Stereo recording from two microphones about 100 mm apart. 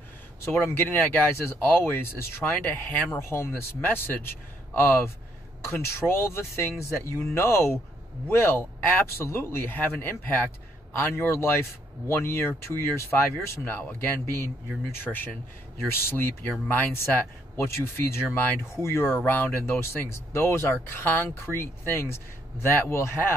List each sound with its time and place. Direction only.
0.5 s speech: 20° left (ahead or behind)